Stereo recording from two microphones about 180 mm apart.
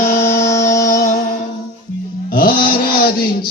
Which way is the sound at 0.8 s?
45° left (ahead or behind).